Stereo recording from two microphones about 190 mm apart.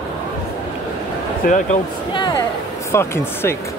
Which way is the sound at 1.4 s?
50° left (ahead or behind).